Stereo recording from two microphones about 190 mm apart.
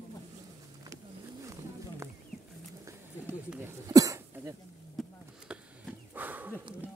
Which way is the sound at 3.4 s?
10° right (ahead or behind).